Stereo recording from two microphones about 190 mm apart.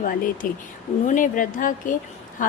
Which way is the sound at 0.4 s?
45° left (ahead or behind).